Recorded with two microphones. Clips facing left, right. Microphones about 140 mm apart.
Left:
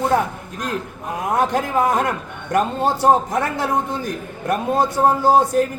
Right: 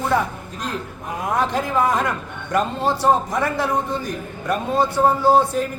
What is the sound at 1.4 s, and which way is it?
A man's voice, 50° left (ahead or behind).